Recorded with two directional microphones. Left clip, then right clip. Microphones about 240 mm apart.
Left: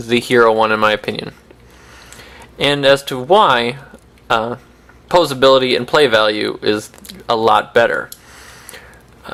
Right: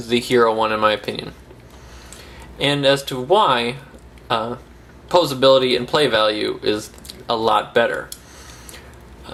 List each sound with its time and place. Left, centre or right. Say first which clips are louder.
0.0 s speech: left 4 dB; centre